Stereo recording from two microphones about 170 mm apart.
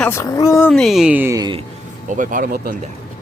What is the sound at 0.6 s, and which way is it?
Speech, 5° left (ahead or behind).